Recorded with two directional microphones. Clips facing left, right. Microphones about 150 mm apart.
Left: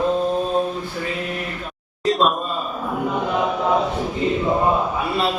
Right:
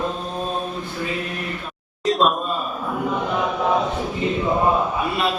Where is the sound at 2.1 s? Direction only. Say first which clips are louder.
Even; centre (ahead or behind).